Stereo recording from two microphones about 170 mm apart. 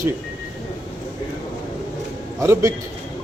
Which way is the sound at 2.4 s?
15° right (ahead or behind).